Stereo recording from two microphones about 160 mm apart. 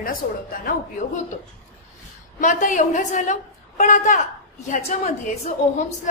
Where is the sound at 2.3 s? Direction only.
50° left (ahead or behind).